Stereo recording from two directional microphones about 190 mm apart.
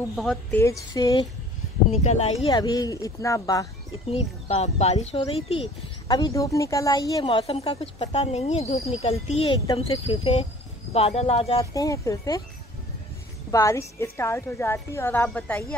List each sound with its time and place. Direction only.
0.1 s a woman's voice: centre (ahead or behind)
0.6 s a woman's voice: 15° left (ahead or behind)
1.9 s speech: 35° left (ahead or behind)
2.5 s speech: 20° left (ahead or behind)
4.1 s speech: 30° left (ahead or behind)
11.7 s a woman's voice: 15° left (ahead or behind)
13.5 s a woman's voice: 15° left (ahead or behind)